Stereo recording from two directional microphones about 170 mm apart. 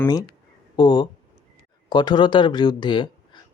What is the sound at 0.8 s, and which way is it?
Speech, 25° left (ahead or behind).